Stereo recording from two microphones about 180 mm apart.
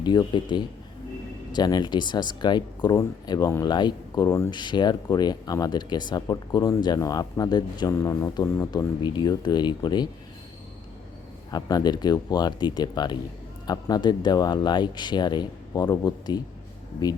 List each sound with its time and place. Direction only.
0.0 s speech: 25° left (ahead or behind)
11.5 s speech: 20° left (ahead or behind)